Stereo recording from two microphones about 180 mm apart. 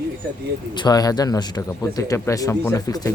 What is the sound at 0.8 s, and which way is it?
Speech, 20° left (ahead or behind).